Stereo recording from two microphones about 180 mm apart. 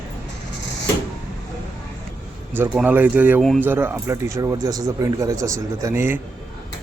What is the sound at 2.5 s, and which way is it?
Speech, 10° right (ahead or behind).